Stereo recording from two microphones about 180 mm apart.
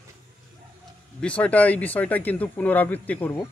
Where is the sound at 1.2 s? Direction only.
5° left (ahead or behind).